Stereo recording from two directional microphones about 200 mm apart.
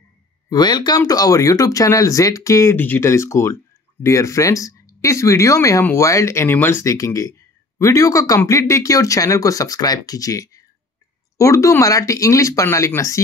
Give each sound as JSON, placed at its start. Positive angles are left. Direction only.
{"t": 0.5, "sound": "speech", "side_deg": 20}